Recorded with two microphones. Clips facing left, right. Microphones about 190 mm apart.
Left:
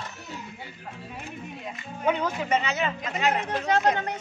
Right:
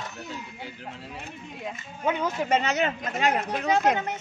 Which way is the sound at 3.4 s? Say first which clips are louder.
Right 1 dB; 10° right (ahead or behind).